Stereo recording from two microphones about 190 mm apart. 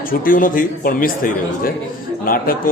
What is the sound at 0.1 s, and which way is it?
Speech, 45° left (ahead or behind).